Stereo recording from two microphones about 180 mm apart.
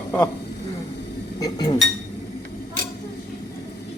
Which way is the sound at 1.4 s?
20° left (ahead or behind).